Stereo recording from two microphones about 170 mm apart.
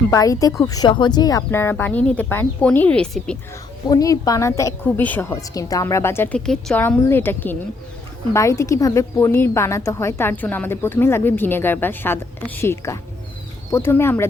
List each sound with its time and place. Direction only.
0.1 s a woman's voice: 20° left (ahead or behind)
3.8 s a woman's voice: 20° left (ahead or behind)